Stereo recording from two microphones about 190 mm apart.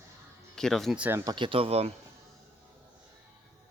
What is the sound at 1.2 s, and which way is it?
Speech, 20° right (ahead or behind).